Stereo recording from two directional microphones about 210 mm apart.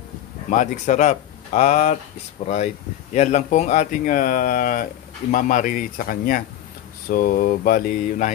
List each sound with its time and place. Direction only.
0.5 s speech: 35° left (ahead or behind)
7.1 s mantra: 45° left (ahead or behind)